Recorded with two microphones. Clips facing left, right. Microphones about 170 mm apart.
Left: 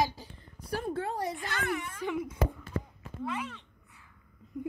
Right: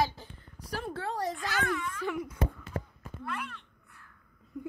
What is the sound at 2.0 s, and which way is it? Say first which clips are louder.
Speech: left 1 dB; 20° left (ahead or behind).